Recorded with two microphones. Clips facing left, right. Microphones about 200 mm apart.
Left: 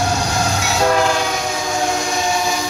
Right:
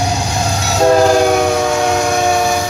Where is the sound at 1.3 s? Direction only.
65° right (ahead or behind).